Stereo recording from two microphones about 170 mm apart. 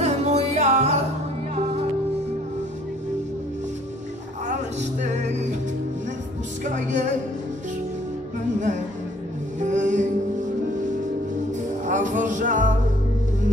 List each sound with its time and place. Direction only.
0.0 s music: 40° right (ahead or behind)
5.0 s music: 45° right (ahead or behind)
6.6 s music: 45° right (ahead or behind)
8.5 s music: 45° right (ahead or behind)
11.8 s music: 45° right (ahead or behind)